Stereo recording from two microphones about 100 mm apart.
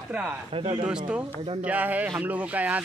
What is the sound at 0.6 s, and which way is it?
Speech, 65° right (ahead or behind).